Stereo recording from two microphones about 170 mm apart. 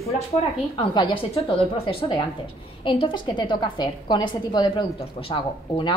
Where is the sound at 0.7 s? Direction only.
25° left (ahead or behind).